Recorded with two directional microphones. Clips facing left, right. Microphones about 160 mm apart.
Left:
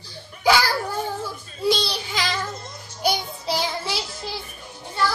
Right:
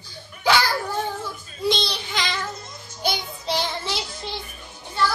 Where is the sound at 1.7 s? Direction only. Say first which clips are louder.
Left 2 dB; 10° left (ahead or behind).